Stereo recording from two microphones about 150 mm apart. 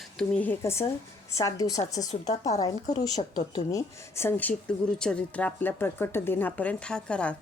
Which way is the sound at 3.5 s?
20° left (ahead or behind).